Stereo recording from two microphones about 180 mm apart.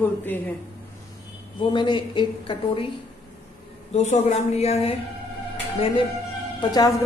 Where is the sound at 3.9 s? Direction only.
40° left (ahead or behind); by 6.9 s 20° left (ahead or behind).